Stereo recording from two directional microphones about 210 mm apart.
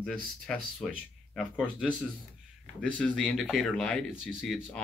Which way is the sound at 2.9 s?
5° left (ahead or behind).